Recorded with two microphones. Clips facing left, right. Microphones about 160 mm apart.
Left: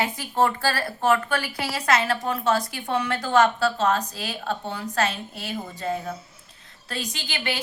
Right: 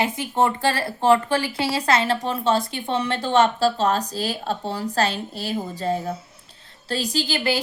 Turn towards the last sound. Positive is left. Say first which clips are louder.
# right 8 dB
turn(degrees=-35)  # may be behind; listen again after turning